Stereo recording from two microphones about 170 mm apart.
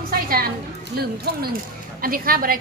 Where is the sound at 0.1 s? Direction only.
60° right (ahead or behind).